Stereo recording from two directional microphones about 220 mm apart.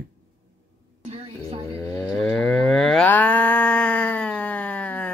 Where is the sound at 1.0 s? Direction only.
30° right (ahead or behind).